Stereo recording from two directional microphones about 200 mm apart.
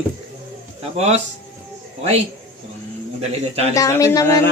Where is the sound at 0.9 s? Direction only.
30° right (ahead or behind).